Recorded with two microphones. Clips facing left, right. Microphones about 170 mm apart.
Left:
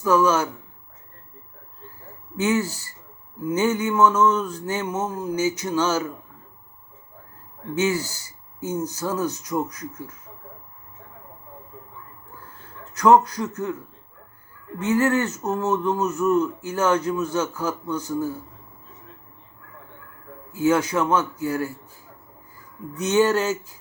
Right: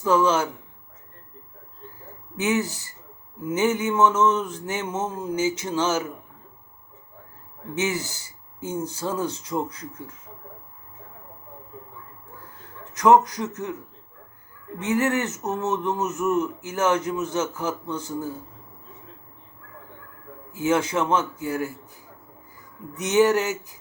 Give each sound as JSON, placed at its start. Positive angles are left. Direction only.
{"t": 0.0, "sound": "speech", "side_deg": -25}
{"t": 2.3, "sound": "speech", "side_deg": -20}
{"t": 7.8, "sound": "speech", "side_deg": -20}
{"t": 12.6, "sound": "a man's voice", "side_deg": -20}
{"t": 20.5, "sound": "speech", "side_deg": -25}